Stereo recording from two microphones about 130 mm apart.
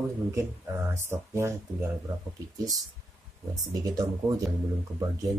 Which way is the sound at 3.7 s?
30° right (ahead or behind).